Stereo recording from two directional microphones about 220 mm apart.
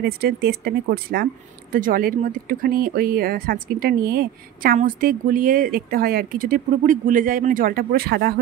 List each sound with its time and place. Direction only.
0.0 s speech: 45° right (ahead or behind)